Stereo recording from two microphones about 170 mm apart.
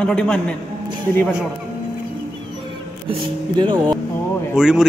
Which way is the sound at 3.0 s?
30° right (ahead or behind).